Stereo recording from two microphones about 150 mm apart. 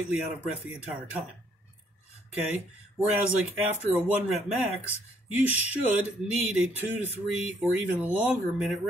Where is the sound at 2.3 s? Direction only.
10° right (ahead or behind).